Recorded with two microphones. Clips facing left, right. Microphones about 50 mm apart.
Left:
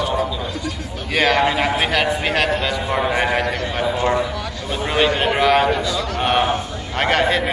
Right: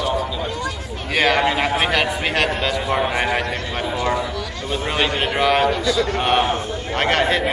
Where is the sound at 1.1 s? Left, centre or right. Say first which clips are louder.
Left 1 dB; centre.